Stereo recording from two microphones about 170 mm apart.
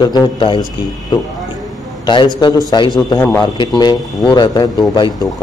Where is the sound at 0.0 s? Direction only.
25° left (ahead or behind).